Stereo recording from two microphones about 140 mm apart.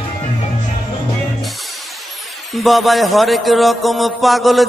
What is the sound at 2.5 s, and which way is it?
A man's voice, centre (ahead or behind).